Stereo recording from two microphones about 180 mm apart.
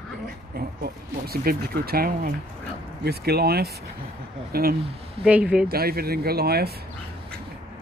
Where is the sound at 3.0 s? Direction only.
60° right (ahead or behind).